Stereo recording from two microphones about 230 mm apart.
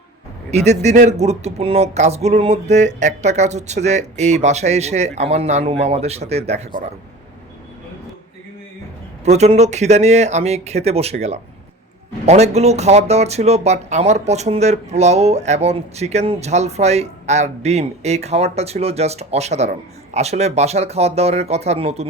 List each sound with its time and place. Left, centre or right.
0.5 s speech: right
9.2 s speech: right